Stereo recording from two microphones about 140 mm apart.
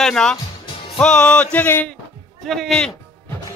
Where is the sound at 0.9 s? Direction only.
5° left (ahead or behind).